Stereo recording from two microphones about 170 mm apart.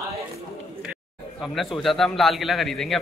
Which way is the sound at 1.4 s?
Centre (ahead or behind).